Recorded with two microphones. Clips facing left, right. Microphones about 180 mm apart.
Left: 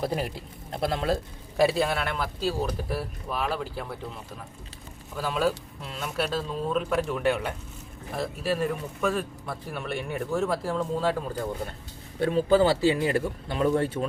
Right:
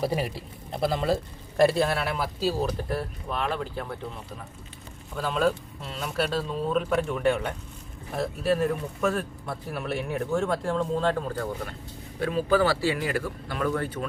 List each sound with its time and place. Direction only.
0.0 s a man's voice: 5° right (ahead or behind)
5.1 s a man's voice: 5° left (ahead or behind)
12.2 s speech: 25° left (ahead or behind)